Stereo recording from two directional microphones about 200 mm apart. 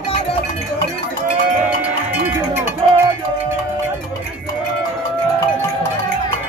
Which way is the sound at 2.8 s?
30° right (ahead or behind).